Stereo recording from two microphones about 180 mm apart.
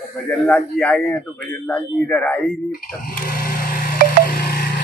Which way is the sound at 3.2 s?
55° left (ahead or behind).